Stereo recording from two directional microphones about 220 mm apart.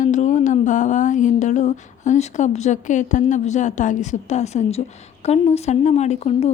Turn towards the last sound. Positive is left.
turn(degrees=30)  # may be behind; listen again after turning